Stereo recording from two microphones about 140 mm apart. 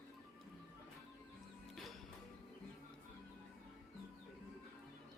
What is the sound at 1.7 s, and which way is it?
Music, centre (ahead or behind).